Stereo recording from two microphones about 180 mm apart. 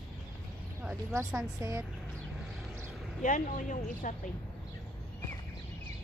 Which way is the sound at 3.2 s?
45° left (ahead or behind).